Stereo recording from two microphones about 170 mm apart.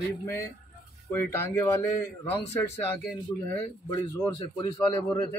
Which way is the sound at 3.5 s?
30° left (ahead or behind).